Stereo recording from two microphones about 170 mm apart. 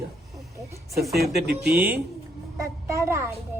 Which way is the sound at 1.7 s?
10° right (ahead or behind).